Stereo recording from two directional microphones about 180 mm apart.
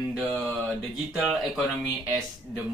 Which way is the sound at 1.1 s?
Centre (ahead or behind).